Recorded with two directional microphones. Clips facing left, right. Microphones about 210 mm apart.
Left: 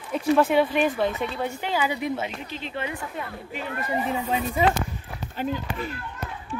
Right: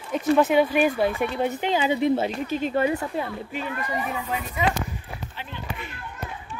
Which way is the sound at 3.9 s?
25° left (ahead or behind).